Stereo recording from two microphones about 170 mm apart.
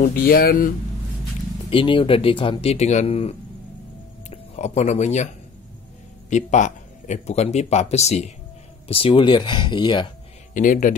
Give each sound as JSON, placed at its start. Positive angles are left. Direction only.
{"t": 0.0, "sound": "speech", "side_deg": 65}
{"t": 1.7, "sound": "speech", "side_deg": 30}
{"t": 6.3, "sound": "speech", "side_deg": 45}
{"t": 10.5, "sound": "speech", "side_deg": 50}